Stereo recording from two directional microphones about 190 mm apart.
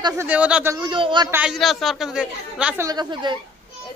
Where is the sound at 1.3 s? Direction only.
5° right (ahead or behind).